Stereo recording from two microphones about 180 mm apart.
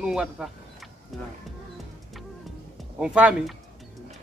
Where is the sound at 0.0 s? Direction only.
5° right (ahead or behind).